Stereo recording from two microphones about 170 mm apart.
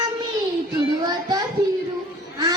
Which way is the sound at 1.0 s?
25° right (ahead or behind).